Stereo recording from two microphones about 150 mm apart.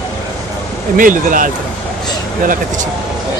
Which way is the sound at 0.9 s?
65° right (ahead or behind).